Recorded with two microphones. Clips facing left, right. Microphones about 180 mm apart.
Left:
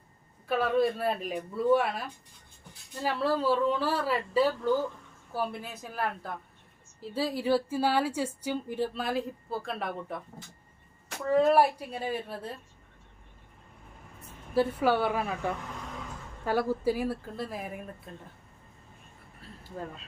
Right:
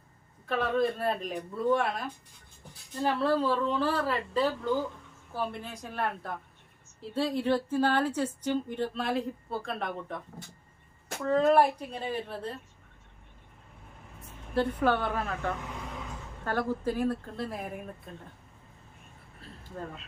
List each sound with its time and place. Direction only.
0.4 s speech: 5° left (ahead or behind)
11.3 s speech: 5° left (ahead or behind)
14.5 s speech: 5° left (ahead or behind)